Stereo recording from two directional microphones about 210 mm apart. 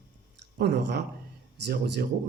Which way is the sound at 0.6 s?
55° right (ahead or behind).